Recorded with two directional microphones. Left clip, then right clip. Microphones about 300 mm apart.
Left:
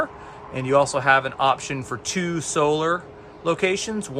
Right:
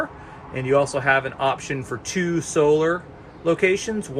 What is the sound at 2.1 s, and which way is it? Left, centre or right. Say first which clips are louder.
Speech: right 4 dB; left.